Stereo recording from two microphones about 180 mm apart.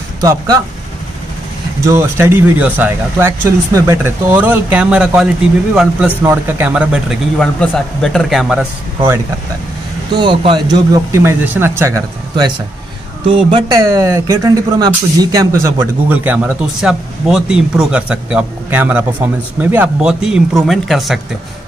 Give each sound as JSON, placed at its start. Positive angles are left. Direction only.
{"t": 0.2, "sound": "speech", "side_deg": -20}
{"t": 1.9, "sound": "speech", "side_deg": -15}
{"t": 10.1, "sound": "speech", "side_deg": -25}
{"t": 11.1, "sound": "speech", "side_deg": -10}